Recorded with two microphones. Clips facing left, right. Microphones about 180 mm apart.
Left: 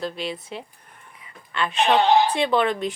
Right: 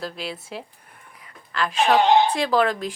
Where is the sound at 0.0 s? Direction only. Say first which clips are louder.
Left 3 dB; centre (ahead or behind).